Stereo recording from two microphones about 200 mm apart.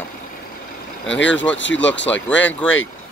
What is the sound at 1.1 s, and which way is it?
Speech, 65° left (ahead or behind).